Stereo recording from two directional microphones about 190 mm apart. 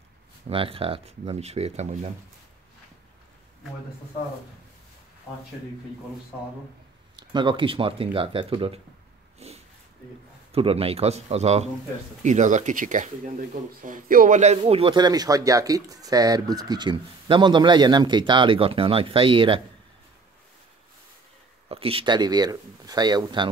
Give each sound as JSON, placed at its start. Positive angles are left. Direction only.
{"t": 0.5, "sound": "speech", "side_deg": -30}
{"t": 7.2, "sound": "speech", "side_deg": -25}
{"t": 9.4, "sound": "a sound", "side_deg": -35}
{"t": 10.5, "sound": "speech", "side_deg": -30}
{"t": 21.6, "sound": "speech", "side_deg": -30}